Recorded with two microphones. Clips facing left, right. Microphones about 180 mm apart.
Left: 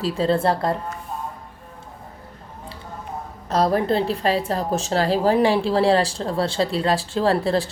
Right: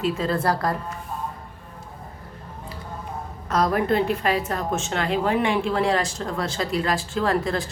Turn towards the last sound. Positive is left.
turn(degrees=30)  # may be behind; listen again after turning